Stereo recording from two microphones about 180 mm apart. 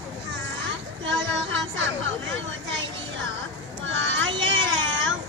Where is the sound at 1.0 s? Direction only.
85° right.